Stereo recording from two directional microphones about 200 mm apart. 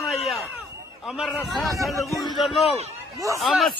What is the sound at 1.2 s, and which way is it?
Speech, centre (ahead or behind).